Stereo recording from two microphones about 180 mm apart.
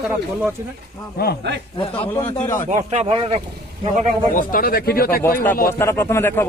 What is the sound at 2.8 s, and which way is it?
Speech, 35° right (ahead or behind).